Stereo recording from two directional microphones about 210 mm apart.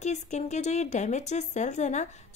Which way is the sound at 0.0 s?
35° left (ahead or behind).